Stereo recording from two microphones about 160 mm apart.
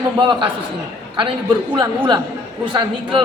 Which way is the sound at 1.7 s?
30° right (ahead or behind).